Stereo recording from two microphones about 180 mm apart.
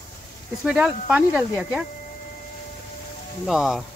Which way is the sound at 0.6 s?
5° right (ahead or behind).